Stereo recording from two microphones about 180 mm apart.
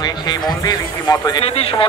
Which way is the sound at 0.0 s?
25° left (ahead or behind).